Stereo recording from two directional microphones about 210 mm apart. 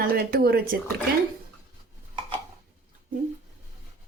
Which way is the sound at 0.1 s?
45° right (ahead or behind).